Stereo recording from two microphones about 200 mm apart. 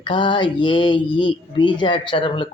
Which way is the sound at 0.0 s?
25° left (ahead or behind).